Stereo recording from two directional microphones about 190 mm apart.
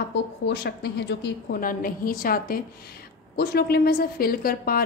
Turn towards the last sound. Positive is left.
turn(degrees=50)  # may be behind; listen again after turning